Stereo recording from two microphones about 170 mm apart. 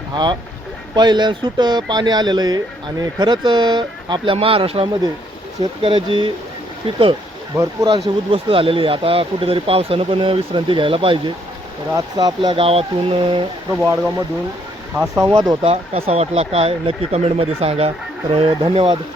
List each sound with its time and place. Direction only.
0.1 s speech: 25° right (ahead or behind)
7.5 s speech: 20° right (ahead or behind)
7.9 s speech: 30° right (ahead or behind)
14.9 s speech: 5° right (ahead or behind)
15.2 s speech: 25° right (ahead or behind)
15.6 s speech: 35° right (ahead or behind)